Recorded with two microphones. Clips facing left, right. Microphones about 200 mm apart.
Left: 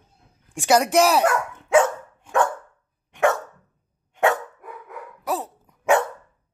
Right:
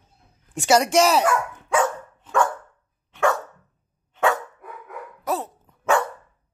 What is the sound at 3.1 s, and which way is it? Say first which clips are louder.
Dog: left 1 dB; 20° left (ahead or behind).